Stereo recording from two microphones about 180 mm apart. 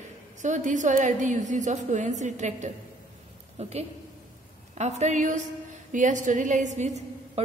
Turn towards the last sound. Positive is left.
turn(degrees=-40)  # may be behind; listen again after turning